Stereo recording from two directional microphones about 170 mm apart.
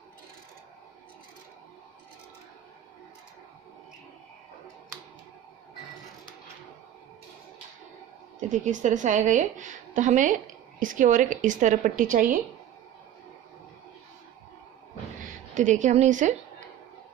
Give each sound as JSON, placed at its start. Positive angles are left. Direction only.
{"t": 8.4, "sound": "a woman's voice", "side_deg": -45}
{"t": 15.2, "sound": "a woman's voice", "side_deg": -45}